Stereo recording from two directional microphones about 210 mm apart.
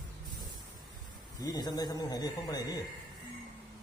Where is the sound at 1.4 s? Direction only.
20° left (ahead or behind).